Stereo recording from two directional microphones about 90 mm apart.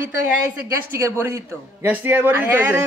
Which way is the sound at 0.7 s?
30° right (ahead or behind).